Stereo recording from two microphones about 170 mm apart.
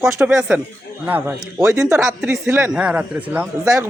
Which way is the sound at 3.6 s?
20° right (ahead or behind).